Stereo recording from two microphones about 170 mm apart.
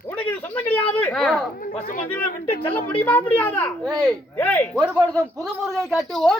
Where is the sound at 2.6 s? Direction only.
10° left (ahead or behind).